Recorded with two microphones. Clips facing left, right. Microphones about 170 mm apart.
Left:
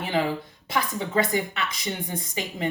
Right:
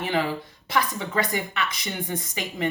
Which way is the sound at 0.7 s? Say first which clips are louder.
Even; 25° left (ahead or behind).